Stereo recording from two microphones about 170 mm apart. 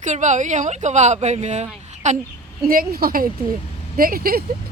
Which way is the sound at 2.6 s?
60° right (ahead or behind).